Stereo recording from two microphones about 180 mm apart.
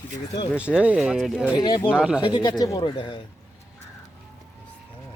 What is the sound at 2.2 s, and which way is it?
Speech, 20° left (ahead or behind).